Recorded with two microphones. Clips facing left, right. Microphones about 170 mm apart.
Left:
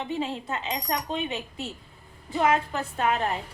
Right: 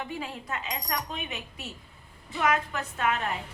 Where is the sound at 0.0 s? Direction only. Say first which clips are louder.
Left 6 dB; 25° left (ahead or behind).